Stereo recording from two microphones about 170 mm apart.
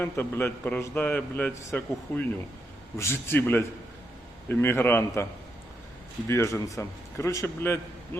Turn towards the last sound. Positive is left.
turn(degrees=15)  # may be behind; listen again after turning